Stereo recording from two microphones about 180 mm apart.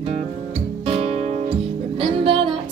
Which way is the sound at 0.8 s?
35° right (ahead or behind).